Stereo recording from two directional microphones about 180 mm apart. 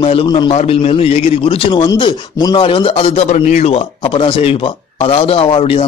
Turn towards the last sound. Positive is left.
turn(degrees=30)  # may be behind; listen again after turning